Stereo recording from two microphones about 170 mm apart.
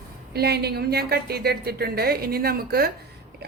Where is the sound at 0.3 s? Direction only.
70° right (ahead or behind).